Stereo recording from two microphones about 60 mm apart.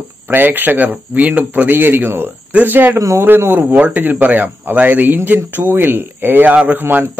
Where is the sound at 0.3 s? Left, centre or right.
Right.